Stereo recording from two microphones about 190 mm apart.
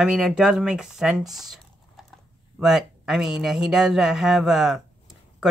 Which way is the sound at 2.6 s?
Centre (ahead or behind).